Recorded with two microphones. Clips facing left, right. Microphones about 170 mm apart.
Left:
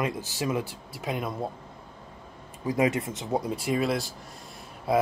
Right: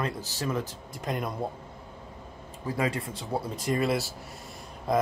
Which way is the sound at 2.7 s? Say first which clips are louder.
Left 5 dB; 20° left (ahead or behind).